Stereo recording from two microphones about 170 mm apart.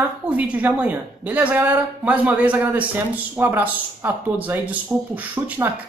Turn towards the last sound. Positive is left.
turn(degrees=-10)  # may be behind; listen again after turning